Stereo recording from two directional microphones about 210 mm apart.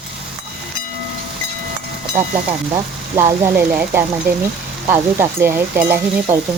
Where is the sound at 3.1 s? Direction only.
10° right (ahead or behind).